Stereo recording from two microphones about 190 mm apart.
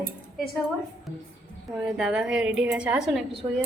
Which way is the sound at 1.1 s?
Centre (ahead or behind).